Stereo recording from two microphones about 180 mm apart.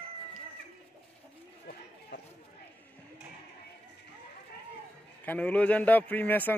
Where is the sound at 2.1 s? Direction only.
80° left.